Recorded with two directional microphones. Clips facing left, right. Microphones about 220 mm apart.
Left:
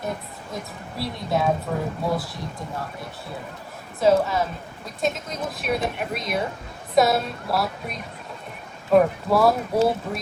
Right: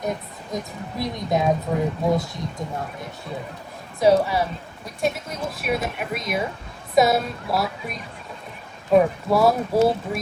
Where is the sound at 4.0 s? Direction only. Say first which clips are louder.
Right 1 dB; 15° right (ahead or behind).